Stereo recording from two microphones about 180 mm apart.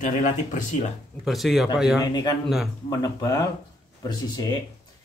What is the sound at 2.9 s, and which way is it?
Speech, 20° left (ahead or behind).